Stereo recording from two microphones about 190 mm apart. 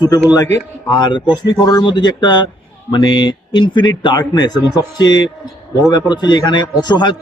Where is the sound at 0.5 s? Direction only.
20° left (ahead or behind).